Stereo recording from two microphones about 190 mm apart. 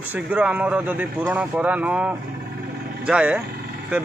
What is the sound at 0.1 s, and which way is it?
A man's voice, 10° right (ahead or behind).